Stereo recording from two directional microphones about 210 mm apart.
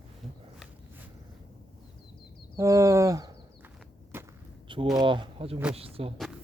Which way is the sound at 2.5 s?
15° right (ahead or behind).